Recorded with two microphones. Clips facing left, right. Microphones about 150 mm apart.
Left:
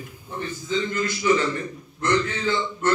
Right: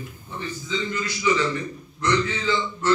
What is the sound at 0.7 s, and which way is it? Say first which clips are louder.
A man's voice: left 4 dB; 50° left (ahead or behind).